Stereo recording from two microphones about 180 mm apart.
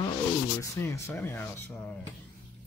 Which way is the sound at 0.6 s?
10° left (ahead or behind).